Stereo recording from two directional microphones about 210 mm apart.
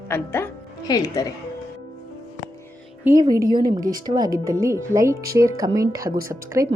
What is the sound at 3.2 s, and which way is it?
A woman's voice, 20° right (ahead or behind).